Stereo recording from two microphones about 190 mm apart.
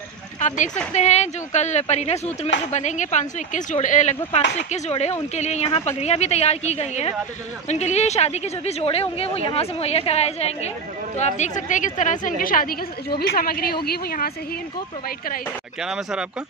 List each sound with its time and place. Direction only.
0.4 s a woman's voice: 40° left (ahead or behind)
15.8 s speech: 5° right (ahead or behind)